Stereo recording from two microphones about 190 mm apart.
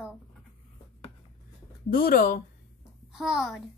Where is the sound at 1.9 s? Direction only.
50° left (ahead or behind).